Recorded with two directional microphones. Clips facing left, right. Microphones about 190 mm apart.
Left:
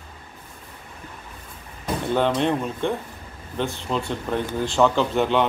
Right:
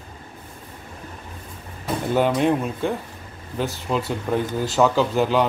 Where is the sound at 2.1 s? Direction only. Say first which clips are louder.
Right 2 dB; 5° right (ahead or behind).